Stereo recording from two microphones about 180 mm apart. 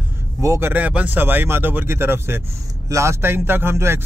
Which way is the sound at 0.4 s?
15° right (ahead or behind).